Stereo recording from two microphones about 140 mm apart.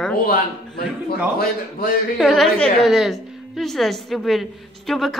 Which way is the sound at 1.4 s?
90° left.